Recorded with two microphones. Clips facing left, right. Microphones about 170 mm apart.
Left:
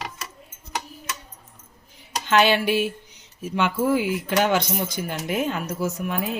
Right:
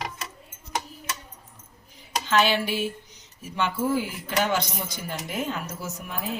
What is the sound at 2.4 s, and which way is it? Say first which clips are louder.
A woman's voice: left 5 dB; 65° left (ahead or behind).